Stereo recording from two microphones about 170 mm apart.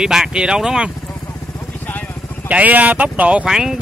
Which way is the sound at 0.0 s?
5° right (ahead or behind).